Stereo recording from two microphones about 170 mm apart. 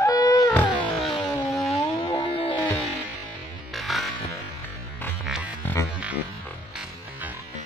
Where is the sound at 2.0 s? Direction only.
15° left (ahead or behind).